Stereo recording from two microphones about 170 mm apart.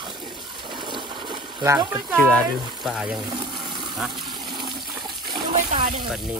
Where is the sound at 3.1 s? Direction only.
25° right (ahead or behind).